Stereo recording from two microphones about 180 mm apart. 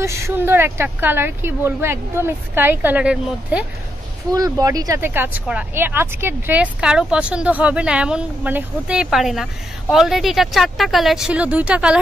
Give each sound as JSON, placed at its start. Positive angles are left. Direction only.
{"t": 0.0, "sound": "speech", "side_deg": -15}
{"t": 4.3, "sound": "speech", "side_deg": -20}